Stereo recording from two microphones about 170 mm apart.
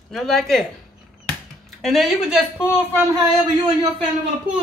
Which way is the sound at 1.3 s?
Centre (ahead or behind).